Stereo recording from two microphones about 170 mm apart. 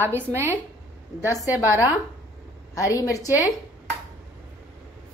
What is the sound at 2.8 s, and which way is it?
Speech, 20° left (ahead or behind).